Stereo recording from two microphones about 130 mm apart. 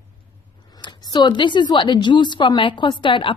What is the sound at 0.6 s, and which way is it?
A woman's voice, 35° left (ahead or behind).